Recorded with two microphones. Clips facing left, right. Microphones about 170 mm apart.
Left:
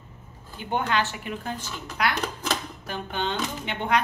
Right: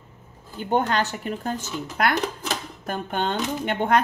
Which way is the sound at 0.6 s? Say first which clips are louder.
Right 4 dB; 45° right (ahead or behind).